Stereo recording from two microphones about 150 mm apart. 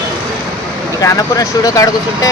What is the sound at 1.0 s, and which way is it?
Speech, 25° left (ahead or behind).